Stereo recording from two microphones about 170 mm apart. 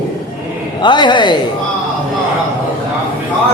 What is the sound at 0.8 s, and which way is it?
Speech, 25° left (ahead or behind).